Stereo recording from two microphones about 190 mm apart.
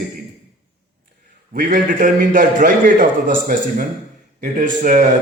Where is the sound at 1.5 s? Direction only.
45° right (ahead or behind).